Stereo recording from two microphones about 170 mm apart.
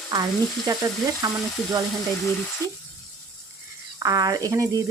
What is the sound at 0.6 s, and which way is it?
Speech, 20° right (ahead or behind).